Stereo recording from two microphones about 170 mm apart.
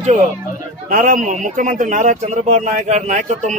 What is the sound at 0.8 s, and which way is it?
A man's voice, 50° right (ahead or behind).